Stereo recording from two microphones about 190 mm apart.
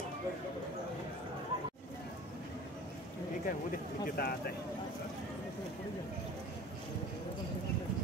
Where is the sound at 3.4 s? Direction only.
50° left (ahead or behind).